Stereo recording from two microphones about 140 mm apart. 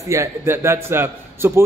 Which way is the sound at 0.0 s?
20° right (ahead or behind).